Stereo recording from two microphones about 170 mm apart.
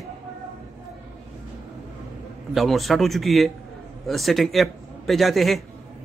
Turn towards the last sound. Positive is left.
turn(degrees=0)  # may be behind; listen again after turning